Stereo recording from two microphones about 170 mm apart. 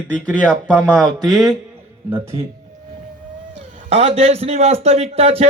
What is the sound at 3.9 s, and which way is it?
A man's voice, 35° right (ahead or behind).